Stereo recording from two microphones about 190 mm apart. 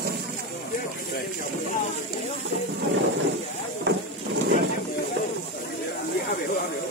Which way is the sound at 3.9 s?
65° right (ahead or behind).